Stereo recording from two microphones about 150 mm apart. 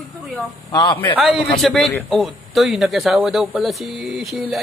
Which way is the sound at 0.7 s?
30° left (ahead or behind).